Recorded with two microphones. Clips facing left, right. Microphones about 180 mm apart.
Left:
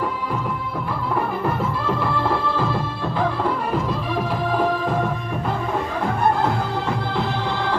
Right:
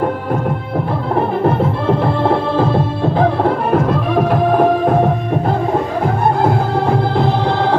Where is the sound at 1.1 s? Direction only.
60° right (ahead or behind).